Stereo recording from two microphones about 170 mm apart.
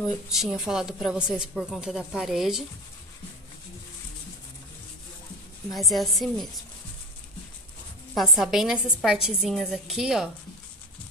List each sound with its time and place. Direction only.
0.0 s a woman's voice: centre (ahead or behind)
5.8 s a woman's voice: centre (ahead or behind)
8.1 s a woman's voice: centre (ahead or behind)